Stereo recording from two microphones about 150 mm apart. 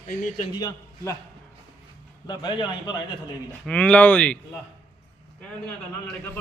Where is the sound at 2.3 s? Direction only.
30° left (ahead or behind).